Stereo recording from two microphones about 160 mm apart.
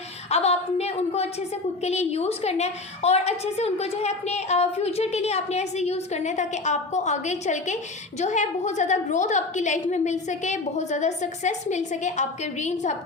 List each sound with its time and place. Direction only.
0.3 s a woman's voice: 45° left (ahead or behind)